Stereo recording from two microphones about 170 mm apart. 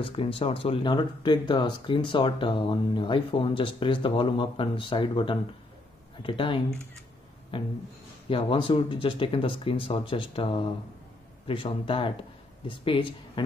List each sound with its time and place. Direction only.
0.0 s speech: 30° left (ahead or behind)